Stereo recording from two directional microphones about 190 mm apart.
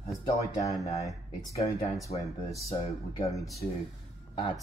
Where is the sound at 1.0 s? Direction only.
15° left (ahead or behind).